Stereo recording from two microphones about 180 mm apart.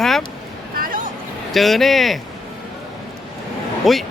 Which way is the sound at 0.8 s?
50° right (ahead or behind).